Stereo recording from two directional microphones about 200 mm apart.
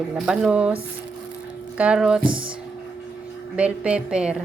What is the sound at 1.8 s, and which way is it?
Speech, 5° right (ahead or behind).